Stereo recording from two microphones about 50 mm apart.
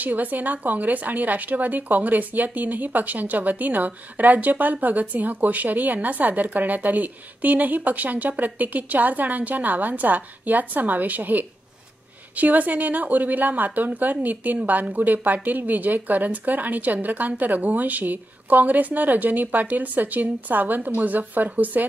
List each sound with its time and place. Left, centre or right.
0.0 s a woman's voice: right